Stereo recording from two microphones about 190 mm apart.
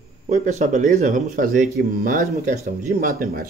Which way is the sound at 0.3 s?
35° right (ahead or behind).